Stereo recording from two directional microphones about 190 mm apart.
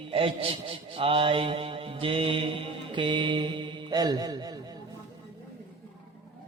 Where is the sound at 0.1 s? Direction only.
30° right (ahead or behind).